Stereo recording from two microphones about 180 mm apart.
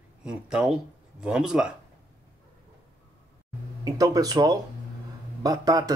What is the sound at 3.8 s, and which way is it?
Speech, 20° right (ahead or behind).